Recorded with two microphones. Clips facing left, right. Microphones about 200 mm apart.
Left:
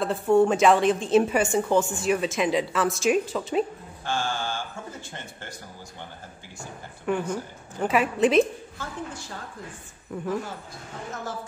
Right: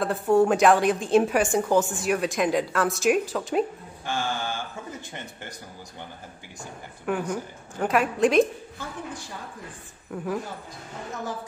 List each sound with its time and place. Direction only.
0.0 s a woman's voice: centre (ahead or behind)
4.0 s mantra: 15° right (ahead or behind)
7.1 s a woman's voice: centre (ahead or behind)
10.1 s a woman's voice: 5° right (ahead or behind)